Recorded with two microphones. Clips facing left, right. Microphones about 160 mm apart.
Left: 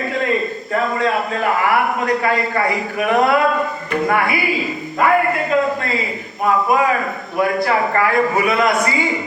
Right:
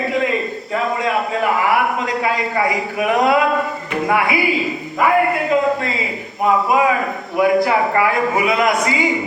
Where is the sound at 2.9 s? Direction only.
15° right (ahead or behind).